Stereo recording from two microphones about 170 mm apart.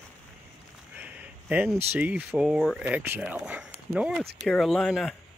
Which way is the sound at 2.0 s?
10° right (ahead or behind).